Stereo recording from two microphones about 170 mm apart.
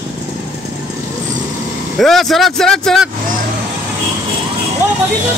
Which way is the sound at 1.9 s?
Centre (ahead or behind).